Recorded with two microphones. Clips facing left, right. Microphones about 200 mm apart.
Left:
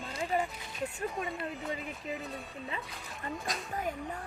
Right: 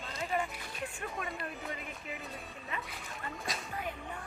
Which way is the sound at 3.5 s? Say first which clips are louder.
Left 2 dB; centre (ahead or behind).